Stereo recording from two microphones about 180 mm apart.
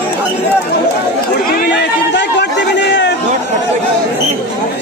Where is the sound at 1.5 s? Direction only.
65° left (ahead or behind).